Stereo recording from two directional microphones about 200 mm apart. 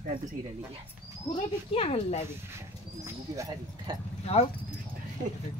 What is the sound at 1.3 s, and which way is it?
Speech, 30° left (ahead or behind).